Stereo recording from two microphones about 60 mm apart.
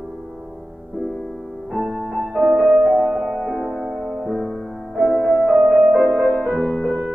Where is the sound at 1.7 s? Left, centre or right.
Centre.